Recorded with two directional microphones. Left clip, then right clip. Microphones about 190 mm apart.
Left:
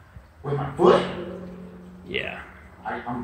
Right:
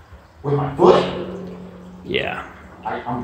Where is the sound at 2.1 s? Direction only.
30° right (ahead or behind).